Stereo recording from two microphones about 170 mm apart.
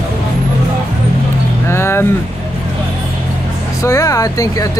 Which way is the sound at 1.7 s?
15° left (ahead or behind).